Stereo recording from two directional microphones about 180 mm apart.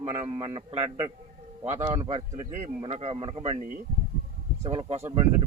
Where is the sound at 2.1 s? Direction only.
40° right (ahead or behind).